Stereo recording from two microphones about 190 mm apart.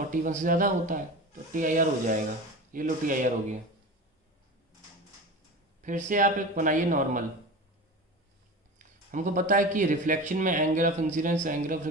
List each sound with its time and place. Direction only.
0.0 s speech: 45° right (ahead or behind)
5.8 s speech: 45° right (ahead or behind)
8.7 s speech: 45° right (ahead or behind)